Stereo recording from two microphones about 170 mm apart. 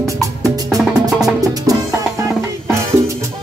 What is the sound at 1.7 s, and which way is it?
Music, 20° right (ahead or behind).